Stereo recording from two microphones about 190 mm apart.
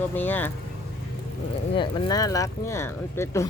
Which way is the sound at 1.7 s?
25° left (ahead or behind).